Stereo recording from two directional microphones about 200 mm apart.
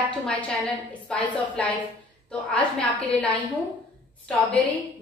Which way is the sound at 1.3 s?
5° left (ahead or behind).